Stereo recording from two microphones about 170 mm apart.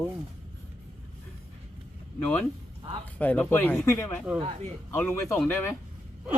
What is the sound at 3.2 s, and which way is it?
Speech, 10° left (ahead or behind).